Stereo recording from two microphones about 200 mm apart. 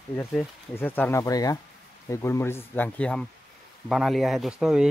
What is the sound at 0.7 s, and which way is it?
Speech, 10° left (ahead or behind).